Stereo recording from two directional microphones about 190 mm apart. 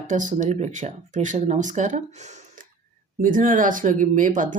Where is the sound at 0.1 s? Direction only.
40° right (ahead or behind).